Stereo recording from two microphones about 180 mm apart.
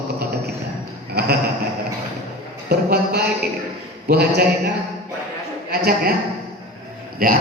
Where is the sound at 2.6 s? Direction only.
60° right (ahead or behind).